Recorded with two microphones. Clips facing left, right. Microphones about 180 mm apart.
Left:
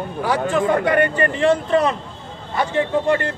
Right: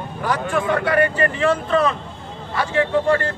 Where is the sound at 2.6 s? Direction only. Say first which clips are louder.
Even; 20° left (ahead or behind).